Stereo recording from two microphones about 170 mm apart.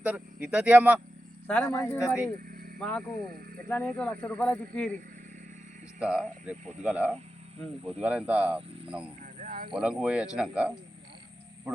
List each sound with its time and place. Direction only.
0.0 s speech: 10° right (ahead or behind)
1.5 s speech: 5° left (ahead or behind)
2.5 s vehicle: 60° right (ahead or behind)
2.7 s speech: 5° left (ahead or behind)
6.0 s speech: 5° right (ahead or behind)
7.6 s speech: 5° left (ahead or behind)
8.0 s speech: 5° right (ahead or behind)
9.4 s a sound: 55° right (ahead or behind)
9.7 s speech: 5° right (ahead or behind)